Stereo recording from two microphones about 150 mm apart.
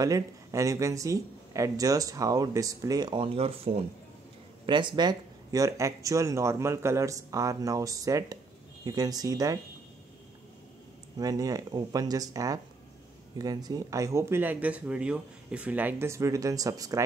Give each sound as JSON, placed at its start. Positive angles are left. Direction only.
{"t": 0.0, "sound": "speech", "side_deg": -20}
{"t": 11.1, "sound": "speech", "side_deg": -25}